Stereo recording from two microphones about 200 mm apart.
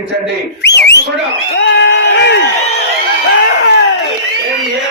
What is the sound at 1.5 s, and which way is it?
Crowd, 60° left (ahead or behind).